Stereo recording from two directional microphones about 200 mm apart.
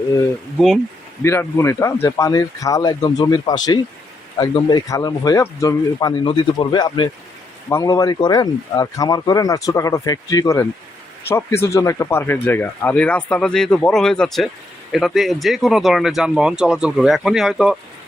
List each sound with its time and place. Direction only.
1.2 s speech: 15° left (ahead or behind)